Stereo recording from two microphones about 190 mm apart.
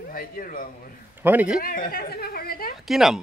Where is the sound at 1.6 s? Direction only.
50° left (ahead or behind).